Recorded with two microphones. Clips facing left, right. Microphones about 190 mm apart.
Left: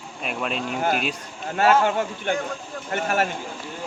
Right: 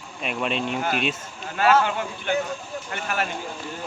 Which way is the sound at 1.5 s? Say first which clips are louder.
Left 1 dB; 45° left (ahead or behind).